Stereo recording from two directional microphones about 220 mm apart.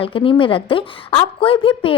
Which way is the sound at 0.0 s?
25° left (ahead or behind).